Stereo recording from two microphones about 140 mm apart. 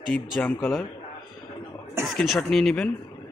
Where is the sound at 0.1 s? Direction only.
10° left (ahead or behind).